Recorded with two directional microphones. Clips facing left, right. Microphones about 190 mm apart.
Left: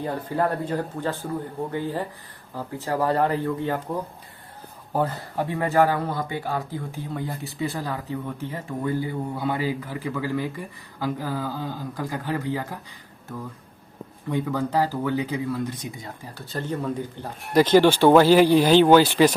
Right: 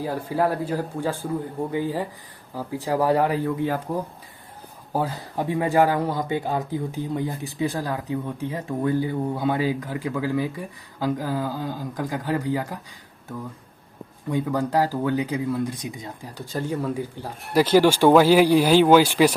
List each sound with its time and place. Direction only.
0.0 s speech: 5° right (ahead or behind)
14.3 s speech: 10° right (ahead or behind)